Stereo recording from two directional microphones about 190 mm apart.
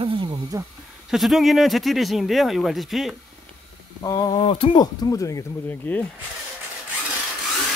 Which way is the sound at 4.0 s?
20° left (ahead or behind).